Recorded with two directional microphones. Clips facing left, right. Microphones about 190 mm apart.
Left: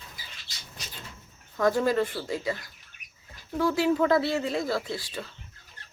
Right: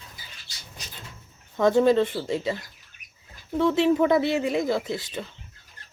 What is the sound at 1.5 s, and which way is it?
Speech, 25° right (ahead or behind).